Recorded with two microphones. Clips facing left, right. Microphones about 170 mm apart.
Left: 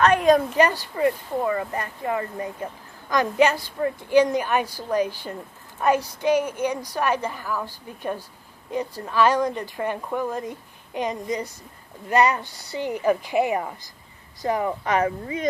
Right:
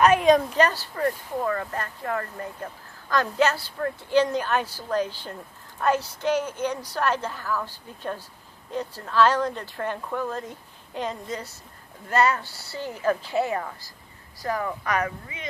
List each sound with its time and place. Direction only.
0.0 s speech: centre (ahead or behind); by 15.4 s 25° left (ahead or behind)